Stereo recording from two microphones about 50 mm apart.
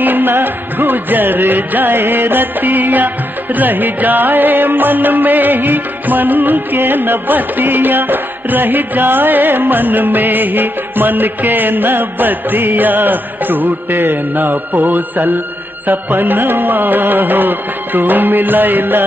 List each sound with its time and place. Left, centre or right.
0.0 s music: right